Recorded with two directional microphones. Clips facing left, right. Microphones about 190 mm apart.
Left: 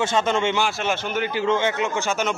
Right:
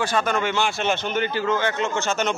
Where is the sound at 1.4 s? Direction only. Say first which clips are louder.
Left 4 dB; 25° left (ahead or behind).